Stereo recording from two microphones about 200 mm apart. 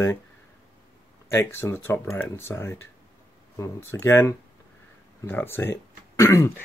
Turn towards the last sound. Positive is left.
turn(degrees=15)  # may be behind; listen again after turning